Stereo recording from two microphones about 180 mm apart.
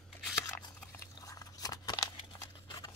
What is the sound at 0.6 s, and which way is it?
Crunch, 20° left (ahead or behind).